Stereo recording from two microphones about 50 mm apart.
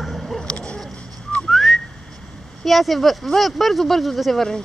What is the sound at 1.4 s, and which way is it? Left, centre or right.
Whistling, centre.